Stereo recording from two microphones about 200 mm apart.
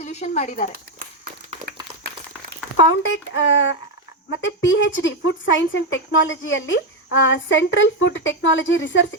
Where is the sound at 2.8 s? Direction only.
70° left (ahead or behind).